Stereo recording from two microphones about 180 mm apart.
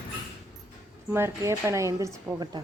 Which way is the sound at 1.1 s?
15° right (ahead or behind).